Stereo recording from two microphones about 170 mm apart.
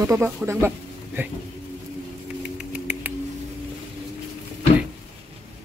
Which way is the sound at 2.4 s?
5° right (ahead or behind).